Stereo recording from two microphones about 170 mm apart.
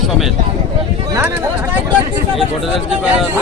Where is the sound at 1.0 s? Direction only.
15° right (ahead or behind).